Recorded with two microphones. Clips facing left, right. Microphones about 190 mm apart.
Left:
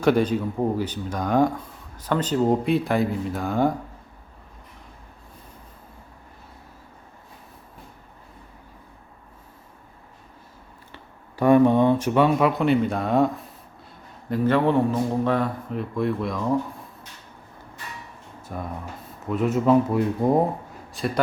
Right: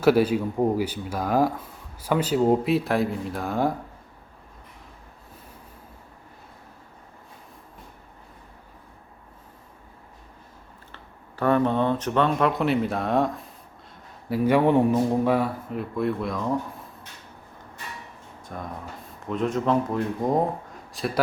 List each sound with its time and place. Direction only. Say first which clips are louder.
0.0 s speech: right 1 dB; 5° right (ahead or behind)
10.9 s speech: left 6 dB; 15° left (ahead or behind)
14.3 s speech: right 1 dB; 10° right (ahead or behind)
18.4 s speech: left 3 dB; 5° left (ahead or behind)